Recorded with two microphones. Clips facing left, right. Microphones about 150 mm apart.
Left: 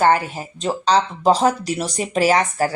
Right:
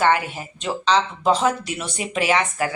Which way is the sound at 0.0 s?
40° left (ahead or behind).